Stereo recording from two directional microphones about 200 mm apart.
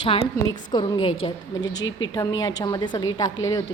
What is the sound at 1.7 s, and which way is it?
Speech, 65° left (ahead or behind).